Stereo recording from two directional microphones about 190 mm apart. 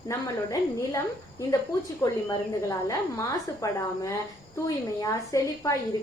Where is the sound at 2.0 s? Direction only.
15° left (ahead or behind).